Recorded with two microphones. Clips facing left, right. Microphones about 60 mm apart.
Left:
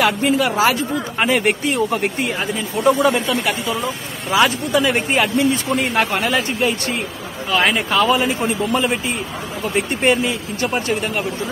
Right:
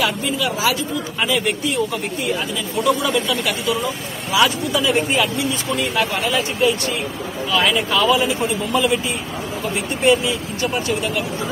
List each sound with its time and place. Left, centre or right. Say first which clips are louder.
0.0 s speech: left 4 dB; left